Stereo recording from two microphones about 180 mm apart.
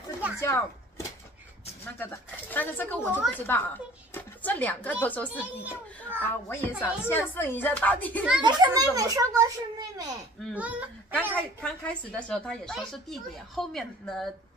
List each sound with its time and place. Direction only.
0.4 s speech: 15° left (ahead or behind)
4.1 s a sound: 10° left (ahead or behind)
5.0 s speech: 10° left (ahead or behind)
5.4 s a child's voice: 10° right (ahead or behind)
6.2 s speech: 10° left (ahead or behind)
8.4 s a child's voice: 25° right (ahead or behind)
10.5 s a child's voice: 10° right (ahead or behind)
11.3 s a woman's voice: 10° left (ahead or behind)